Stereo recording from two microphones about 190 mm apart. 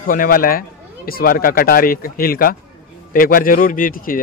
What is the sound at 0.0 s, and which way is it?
Speech, 50° left (ahead or behind).